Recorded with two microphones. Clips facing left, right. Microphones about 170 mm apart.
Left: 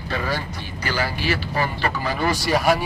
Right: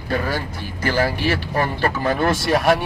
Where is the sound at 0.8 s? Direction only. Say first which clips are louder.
Right 5 dB; 50° right (ahead or behind).